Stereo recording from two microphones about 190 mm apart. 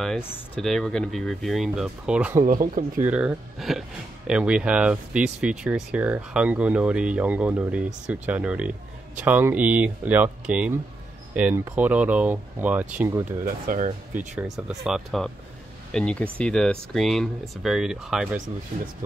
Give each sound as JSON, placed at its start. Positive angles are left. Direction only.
{"t": 0.0, "sound": "speech", "side_deg": 0}
{"t": 2.4, "sound": "speech", "side_deg": -45}
{"t": 3.0, "sound": "speech", "side_deg": -5}
{"t": 13.4, "sound": "speech", "side_deg": -45}
{"t": 14.1, "sound": "speech", "side_deg": -5}